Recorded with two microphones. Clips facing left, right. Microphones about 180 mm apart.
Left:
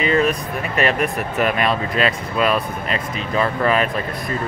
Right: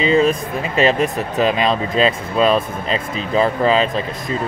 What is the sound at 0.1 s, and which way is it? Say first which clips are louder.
Speech: right 3 dB; 25° right (ahead or behind).